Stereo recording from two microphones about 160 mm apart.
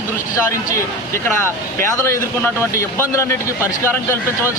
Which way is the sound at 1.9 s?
15° left (ahead or behind).